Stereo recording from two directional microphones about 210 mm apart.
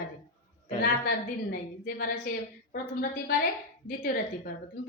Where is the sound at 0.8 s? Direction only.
45° left (ahead or behind).